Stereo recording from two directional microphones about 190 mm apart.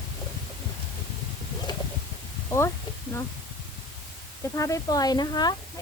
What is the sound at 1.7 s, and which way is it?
Bird, 20° left (ahead or behind).